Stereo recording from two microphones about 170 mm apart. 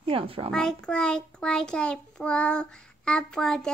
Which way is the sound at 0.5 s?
5° left (ahead or behind).